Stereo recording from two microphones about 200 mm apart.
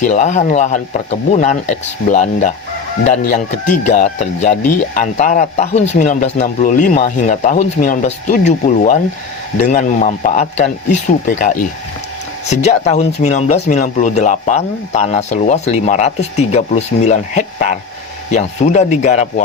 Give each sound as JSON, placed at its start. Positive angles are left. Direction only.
{"t": 0.0, "sound": "speech", "side_deg": 35}